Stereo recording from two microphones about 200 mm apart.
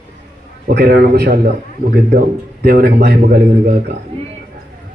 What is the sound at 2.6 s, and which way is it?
Speech, 55° right (ahead or behind).